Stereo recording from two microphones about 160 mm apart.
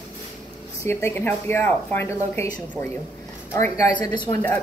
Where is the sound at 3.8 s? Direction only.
25° left (ahead or behind).